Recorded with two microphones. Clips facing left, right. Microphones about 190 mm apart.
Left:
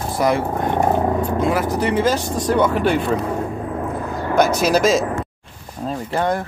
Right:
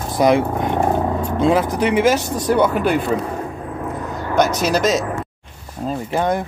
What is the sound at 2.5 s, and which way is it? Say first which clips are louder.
Speech: right 1 dB; 5° right (ahead or behind).